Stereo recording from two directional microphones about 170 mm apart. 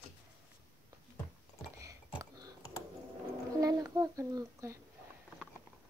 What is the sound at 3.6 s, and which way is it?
Speech, 20° right (ahead or behind).